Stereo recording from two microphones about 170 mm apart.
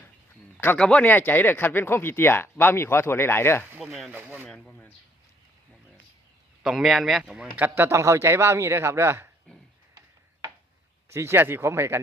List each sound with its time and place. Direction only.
0.6 s speech: 10° left (ahead or behind)
4.1 s speech: 10° right (ahead or behind)
4.4 s speech: 5° left (ahead or behind)
6.6 s speech: centre (ahead or behind)
11.1 s speech: 15° right (ahead or behind)